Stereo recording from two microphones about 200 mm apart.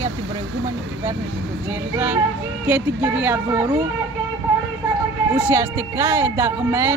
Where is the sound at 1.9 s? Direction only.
10° right (ahead or behind).